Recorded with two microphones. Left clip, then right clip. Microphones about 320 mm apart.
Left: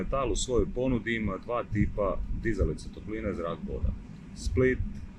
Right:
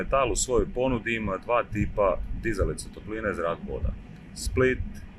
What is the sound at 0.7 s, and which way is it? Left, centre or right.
Speech, right.